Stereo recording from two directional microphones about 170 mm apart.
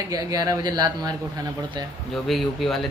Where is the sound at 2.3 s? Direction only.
Centre (ahead or behind).